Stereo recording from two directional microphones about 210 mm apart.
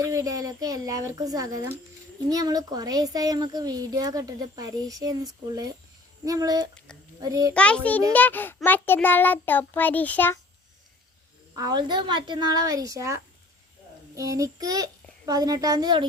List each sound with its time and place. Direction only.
0.0 s a child's voice: 15° right (ahead or behind)
7.5 s a child's voice: 5° left (ahead or behind)
11.5 s a woman's voice: 20° right (ahead or behind)
14.2 s a child's voice: 15° right (ahead or behind)